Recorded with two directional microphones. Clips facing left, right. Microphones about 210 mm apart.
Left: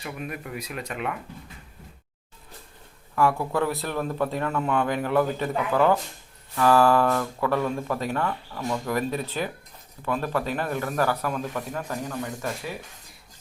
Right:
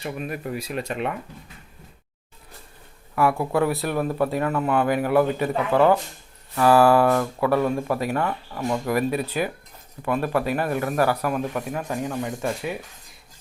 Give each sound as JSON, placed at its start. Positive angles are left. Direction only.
{"t": 0.0, "sound": "speech", "side_deg": -30}
{"t": 3.2, "sound": "a man's voice", "side_deg": -10}